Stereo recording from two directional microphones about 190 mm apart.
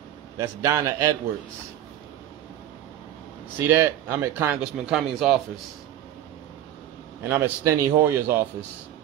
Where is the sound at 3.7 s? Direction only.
15° right (ahead or behind).